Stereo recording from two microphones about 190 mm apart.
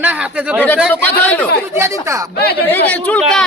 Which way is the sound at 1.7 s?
15° right (ahead or behind).